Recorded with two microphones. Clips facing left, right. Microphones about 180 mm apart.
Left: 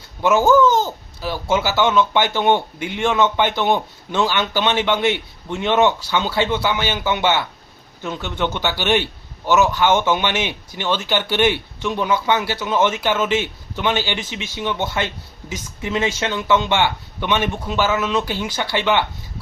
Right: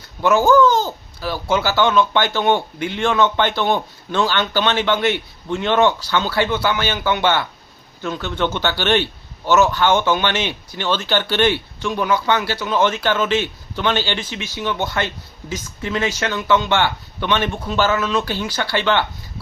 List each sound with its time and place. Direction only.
0.2 s speech: 15° left (ahead or behind)